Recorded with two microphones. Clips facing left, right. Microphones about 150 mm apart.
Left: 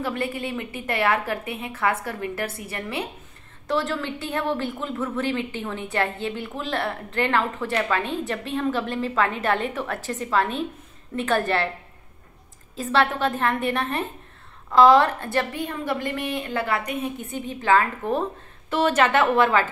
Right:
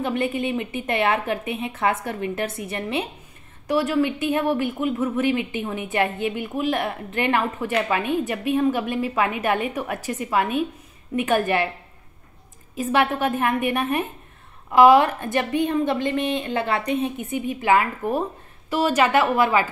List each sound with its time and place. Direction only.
0.0 s a woman's voice: 20° right (ahead or behind)
12.7 s a woman's voice: 15° right (ahead or behind)